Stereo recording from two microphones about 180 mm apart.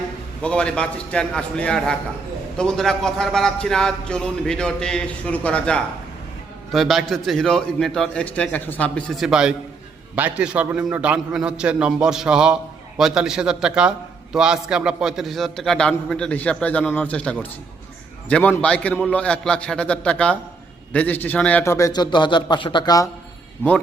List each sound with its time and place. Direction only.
0.4 s a man's voice: 5° left (ahead or behind); by 23.0 s 25° left (ahead or behind)